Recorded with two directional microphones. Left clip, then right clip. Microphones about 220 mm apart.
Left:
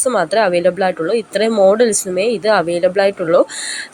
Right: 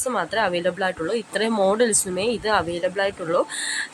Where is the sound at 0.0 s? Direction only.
20° left (ahead or behind).